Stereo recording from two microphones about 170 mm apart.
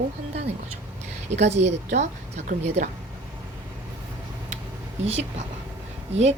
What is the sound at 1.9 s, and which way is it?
Speech, 45° right (ahead or behind).